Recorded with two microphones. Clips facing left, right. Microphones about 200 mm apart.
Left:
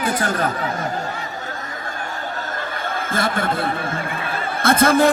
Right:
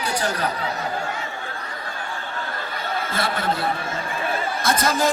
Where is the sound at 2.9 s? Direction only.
50° left (ahead or behind).